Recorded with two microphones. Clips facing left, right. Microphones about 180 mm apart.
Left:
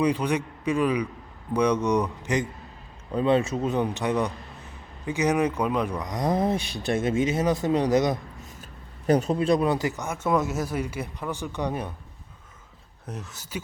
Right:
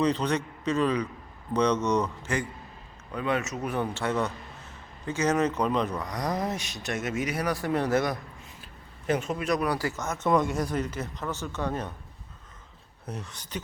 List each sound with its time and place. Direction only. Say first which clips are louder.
0.0 s speech: left 2 dB; 10° left (ahead or behind)
3.1 s speech: left 7 dB; 30° left (ahead or behind)
9.0 s speech: left 6 dB; 35° left (ahead or behind); by 11.9 s 10° left (ahead or behind)
13.1 s speech: left 1 dB; centre (ahead or behind)